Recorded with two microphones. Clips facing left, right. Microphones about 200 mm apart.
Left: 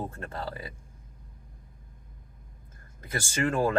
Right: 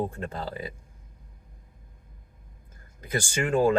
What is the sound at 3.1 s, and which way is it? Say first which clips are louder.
Speech: right 2 dB; 15° right (ahead or behind).